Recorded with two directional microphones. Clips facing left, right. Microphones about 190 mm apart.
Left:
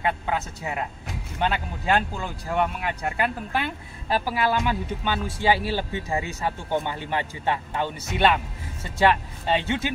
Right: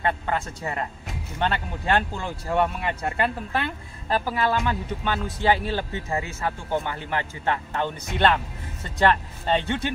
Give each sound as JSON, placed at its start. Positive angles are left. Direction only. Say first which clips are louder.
{"t": 0.0, "sound": "speech", "louder": "even", "side_deg": 5}